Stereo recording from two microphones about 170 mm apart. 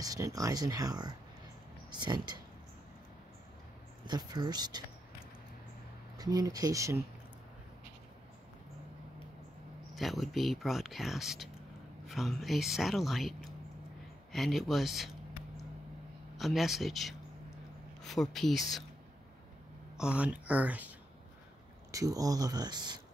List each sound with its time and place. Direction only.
0.0 s speech: 20° right (ahead or behind)
4.0 s speech: 25° right (ahead or behind)
6.1 s speech: 20° right (ahead or behind)
9.9 s speech: centre (ahead or behind)
16.3 s speech: centre (ahead or behind)
20.0 s speech: 5° right (ahead or behind)
21.9 s speech: 20° right (ahead or behind)